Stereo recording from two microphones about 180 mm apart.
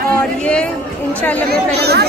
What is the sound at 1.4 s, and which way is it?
Speech, 65° right (ahead or behind).